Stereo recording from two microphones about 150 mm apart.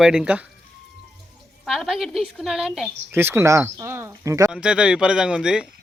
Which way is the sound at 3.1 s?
15° right (ahead or behind).